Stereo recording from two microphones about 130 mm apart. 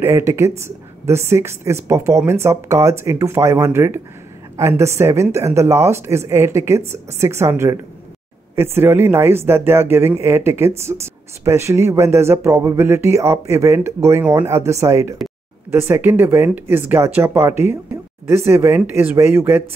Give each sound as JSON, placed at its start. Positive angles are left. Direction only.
{"t": 0.0, "sound": "speech", "side_deg": -20}